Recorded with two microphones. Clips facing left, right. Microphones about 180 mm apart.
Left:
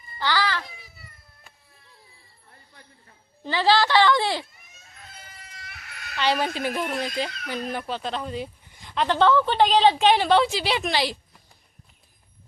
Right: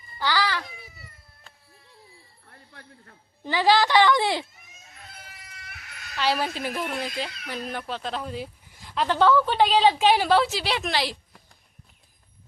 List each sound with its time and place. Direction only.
0.2 s a sound: 15° right (ahead or behind)
2.5 s jingle bell: 60° right (ahead or behind)
3.4 s speech: 15° right (ahead or behind)
6.1 s speech: 5° right (ahead or behind)